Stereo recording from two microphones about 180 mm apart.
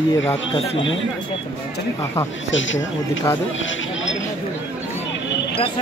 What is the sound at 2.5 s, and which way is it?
Music, 90° left.